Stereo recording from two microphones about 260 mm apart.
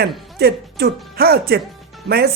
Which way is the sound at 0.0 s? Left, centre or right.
Right.